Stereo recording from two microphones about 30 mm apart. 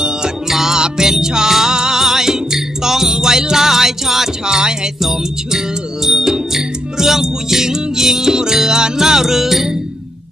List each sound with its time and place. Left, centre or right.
0.5 s music: centre
0.7 s music: right
6.0 s music: centre